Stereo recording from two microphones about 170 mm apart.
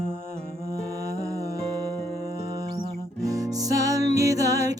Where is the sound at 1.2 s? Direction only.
20° right (ahead or behind).